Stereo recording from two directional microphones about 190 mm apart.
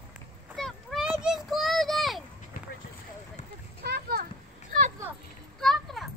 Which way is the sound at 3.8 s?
55° right (ahead or behind).